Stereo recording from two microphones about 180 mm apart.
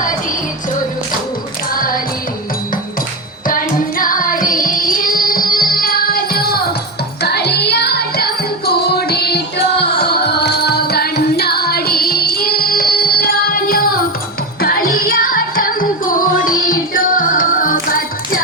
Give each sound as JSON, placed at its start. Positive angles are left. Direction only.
{"t": 1.7, "sound": "music", "side_deg": 50}
{"t": 3.4, "sound": "music", "side_deg": 50}